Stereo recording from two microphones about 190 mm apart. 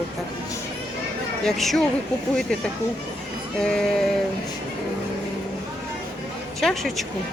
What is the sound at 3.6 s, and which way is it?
Speech, 5° left (ahead or behind).